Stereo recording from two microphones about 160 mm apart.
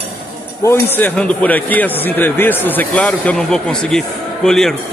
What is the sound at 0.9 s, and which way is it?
A man's voice, 10° left (ahead or behind).